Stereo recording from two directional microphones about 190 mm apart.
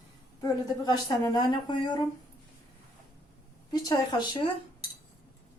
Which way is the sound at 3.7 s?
20° left (ahead or behind).